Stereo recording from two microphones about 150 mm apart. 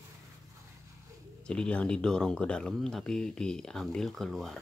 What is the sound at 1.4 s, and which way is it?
Speech, 5° left (ahead or behind).